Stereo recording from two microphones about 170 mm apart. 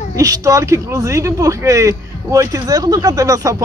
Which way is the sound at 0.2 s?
20° right (ahead or behind).